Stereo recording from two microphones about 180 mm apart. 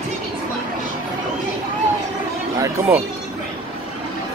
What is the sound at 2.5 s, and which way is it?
Chatter, 15° right (ahead or behind).